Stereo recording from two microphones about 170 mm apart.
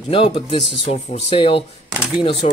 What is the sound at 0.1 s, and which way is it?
Speech, 30° left (ahead or behind).